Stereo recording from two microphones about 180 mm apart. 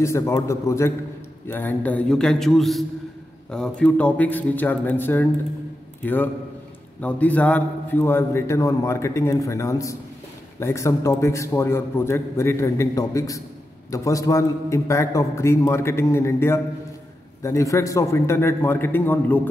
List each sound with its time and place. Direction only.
0.0 s a man's voice: 15° left (ahead or behind)